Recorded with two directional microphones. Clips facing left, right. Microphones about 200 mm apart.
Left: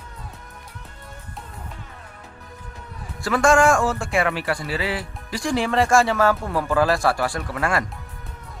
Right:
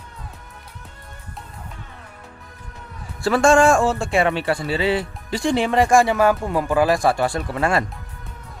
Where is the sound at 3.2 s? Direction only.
30° right (ahead or behind).